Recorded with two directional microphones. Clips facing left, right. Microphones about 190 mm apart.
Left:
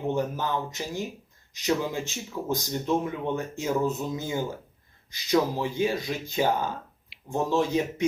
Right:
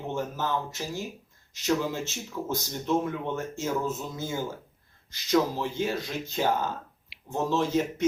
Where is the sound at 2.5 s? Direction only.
15° left (ahead or behind).